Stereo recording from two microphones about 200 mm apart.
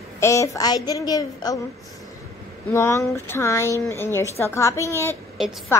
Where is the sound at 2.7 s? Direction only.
15° left (ahead or behind).